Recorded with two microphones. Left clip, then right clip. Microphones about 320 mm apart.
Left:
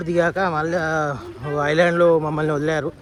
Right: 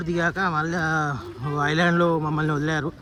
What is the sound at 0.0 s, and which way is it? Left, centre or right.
A man's voice, centre.